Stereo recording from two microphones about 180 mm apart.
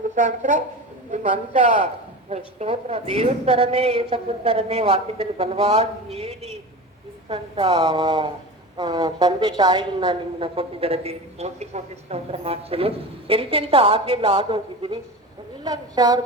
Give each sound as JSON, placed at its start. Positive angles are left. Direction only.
{"t": 0.1, "sound": "a woman's voice", "side_deg": -45}